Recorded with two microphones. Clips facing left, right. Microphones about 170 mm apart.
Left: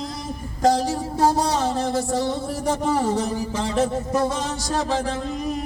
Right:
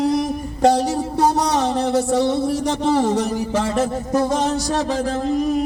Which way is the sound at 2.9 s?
80° right.